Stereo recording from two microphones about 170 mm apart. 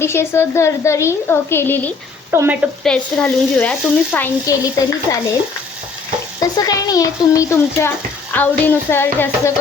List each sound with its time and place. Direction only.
0.0 s speech: 15° left (ahead or behind)
2.3 s speech: 15° right (ahead or behind)
2.8 s speech: 5° left (ahead or behind)
5.1 s stir: 20° left (ahead or behind)
6.6 s speech: 20° left (ahead or behind)